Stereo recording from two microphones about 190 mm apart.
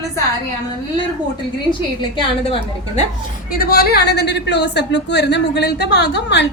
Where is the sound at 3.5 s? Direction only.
50° left (ahead or behind).